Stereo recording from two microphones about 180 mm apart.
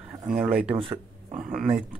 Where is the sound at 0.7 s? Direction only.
30° right (ahead or behind).